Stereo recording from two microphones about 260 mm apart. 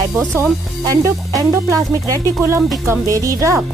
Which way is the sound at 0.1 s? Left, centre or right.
Centre.